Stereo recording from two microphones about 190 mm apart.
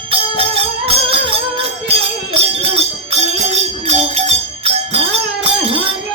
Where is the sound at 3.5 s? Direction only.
35° right (ahead or behind).